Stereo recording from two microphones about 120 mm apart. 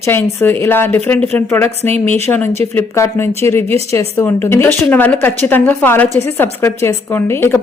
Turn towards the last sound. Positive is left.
turn(degrees=20)  # may be behind; listen again after turning